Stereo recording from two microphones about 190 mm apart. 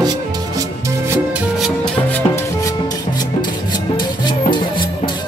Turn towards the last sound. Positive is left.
turn(degrees=25)  # may be behind; listen again after turning